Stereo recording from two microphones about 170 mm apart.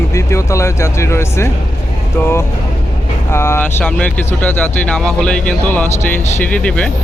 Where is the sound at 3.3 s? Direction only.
15° left (ahead or behind).